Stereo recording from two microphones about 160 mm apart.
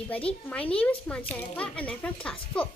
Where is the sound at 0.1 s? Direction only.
10° left (ahead or behind).